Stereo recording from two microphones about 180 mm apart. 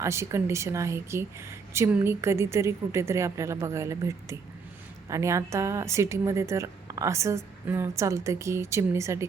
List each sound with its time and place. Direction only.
0.0 s speech: 15° right (ahead or behind)